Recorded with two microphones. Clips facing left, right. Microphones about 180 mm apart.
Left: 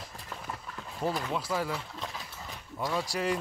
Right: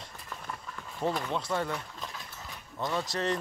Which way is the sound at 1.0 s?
5° left (ahead or behind).